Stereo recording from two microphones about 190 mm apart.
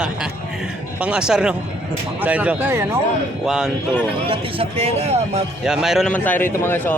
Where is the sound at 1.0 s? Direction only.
5° right (ahead or behind).